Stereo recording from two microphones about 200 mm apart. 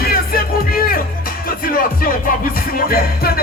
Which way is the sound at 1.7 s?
45° left (ahead or behind).